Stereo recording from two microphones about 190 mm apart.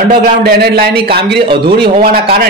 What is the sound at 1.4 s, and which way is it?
Speech, 25° right (ahead or behind).